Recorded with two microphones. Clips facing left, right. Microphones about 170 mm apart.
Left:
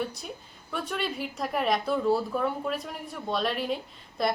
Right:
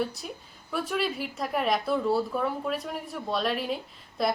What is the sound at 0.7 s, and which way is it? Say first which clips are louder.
A woman's voice: right 3 dB; centre (ahead or behind).